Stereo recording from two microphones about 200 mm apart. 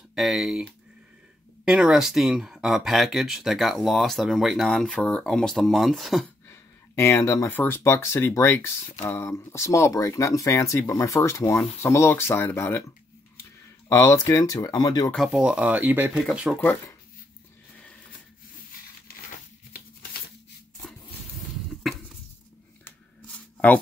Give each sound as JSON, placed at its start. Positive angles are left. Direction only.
{"t": 0.1, "sound": "speech", "side_deg": 0}
{"t": 6.5, "sound": "speech", "side_deg": 15}
{"t": 15.0, "sound": "speech", "side_deg": 0}
{"t": 21.9, "sound": "a sound", "side_deg": 0}
{"t": 22.8, "sound": "shuffling cards", "side_deg": 5}